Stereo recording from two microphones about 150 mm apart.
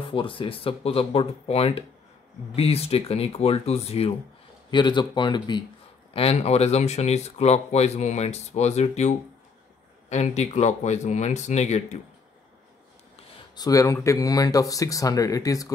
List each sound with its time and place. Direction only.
0.1 s speech: 35° left (ahead or behind)
4.6 s speech: 30° left (ahead or behind)
6.1 s speech: 45° left (ahead or behind)
13.6 s speech: 20° left (ahead or behind)